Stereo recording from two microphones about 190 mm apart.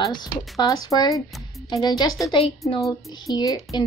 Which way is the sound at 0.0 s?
20° left (ahead or behind).